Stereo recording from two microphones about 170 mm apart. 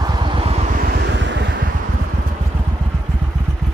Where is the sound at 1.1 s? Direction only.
90° right.